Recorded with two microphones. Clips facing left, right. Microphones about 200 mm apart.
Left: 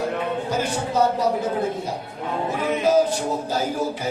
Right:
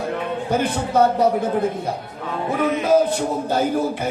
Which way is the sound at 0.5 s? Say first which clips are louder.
Right 6 dB; 55° right (ahead or behind).